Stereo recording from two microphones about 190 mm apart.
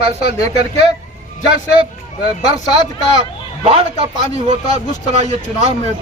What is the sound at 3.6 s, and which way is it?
Speech, 30° right (ahead or behind).